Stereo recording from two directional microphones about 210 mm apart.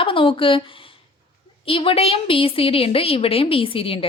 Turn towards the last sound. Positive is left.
turn(degrees=25)  # may be behind; listen again after turning